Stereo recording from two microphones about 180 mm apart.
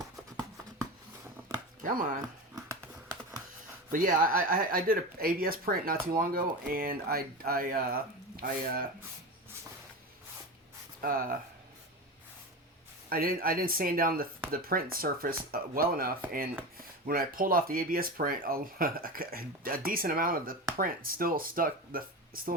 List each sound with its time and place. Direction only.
1.8 s speech: 50° right (ahead or behind)
3.9 s speech: 50° right (ahead or behind)
11.0 s speech: 50° right (ahead or behind)
13.1 s speech: 55° right (ahead or behind)